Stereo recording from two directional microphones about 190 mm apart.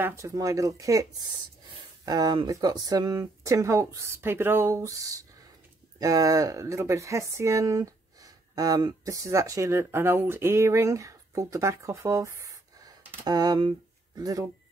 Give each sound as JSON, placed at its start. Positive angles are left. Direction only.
{"t": 0.0, "sound": "speech", "side_deg": -15}